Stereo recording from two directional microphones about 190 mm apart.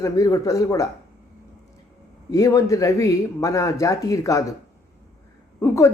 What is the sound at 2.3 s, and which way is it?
A woman's voice, 20° left (ahead or behind).